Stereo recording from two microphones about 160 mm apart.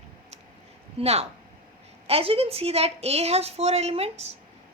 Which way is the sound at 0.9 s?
40° right (ahead or behind).